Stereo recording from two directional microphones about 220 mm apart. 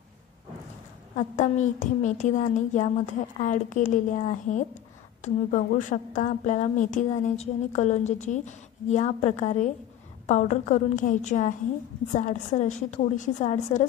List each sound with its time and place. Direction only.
1.1 s a woman's voice: 35° left (ahead or behind)